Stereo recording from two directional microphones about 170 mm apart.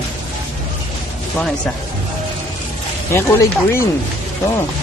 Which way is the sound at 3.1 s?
15° left (ahead or behind).